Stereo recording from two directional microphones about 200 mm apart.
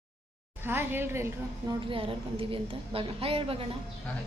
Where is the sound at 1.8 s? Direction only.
25° right (ahead or behind).